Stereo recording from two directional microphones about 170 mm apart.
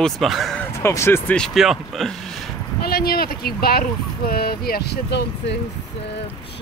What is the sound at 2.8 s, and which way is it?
Speech, 65° left (ahead or behind).